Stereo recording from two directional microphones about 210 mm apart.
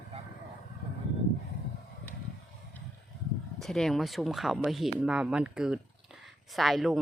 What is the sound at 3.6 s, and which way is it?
Speech, centre (ahead or behind).